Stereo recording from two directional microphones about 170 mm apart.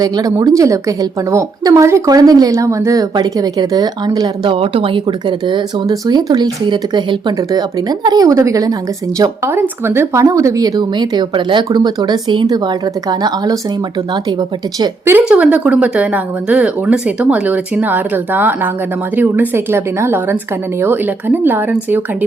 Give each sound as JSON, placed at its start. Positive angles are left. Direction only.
{"t": 0.0, "sound": "a woman's voice", "side_deg": -20}
{"t": 4.5, "sound": "a woman's voice", "side_deg": -35}
{"t": 14.8, "sound": "speech", "side_deg": -15}